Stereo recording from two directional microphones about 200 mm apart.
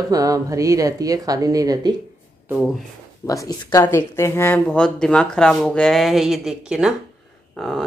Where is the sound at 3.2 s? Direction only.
15° left (ahead or behind).